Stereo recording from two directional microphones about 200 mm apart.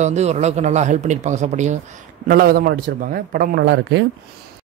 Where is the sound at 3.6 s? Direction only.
65° right (ahead or behind).